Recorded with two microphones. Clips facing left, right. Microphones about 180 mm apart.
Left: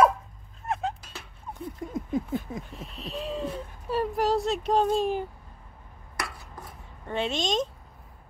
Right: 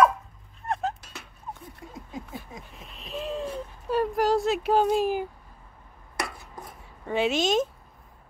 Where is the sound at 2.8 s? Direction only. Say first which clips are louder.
Even; centre (ahead or behind).